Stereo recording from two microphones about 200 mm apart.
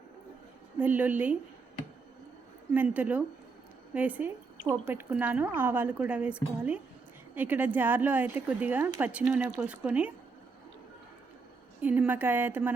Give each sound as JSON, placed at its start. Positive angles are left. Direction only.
{"t": 0.8, "sound": "a woman's voice", "side_deg": -10}
{"t": 2.7, "sound": "a woman's voice", "side_deg": -10}
{"t": 11.8, "sound": "a woman's voice", "side_deg": -10}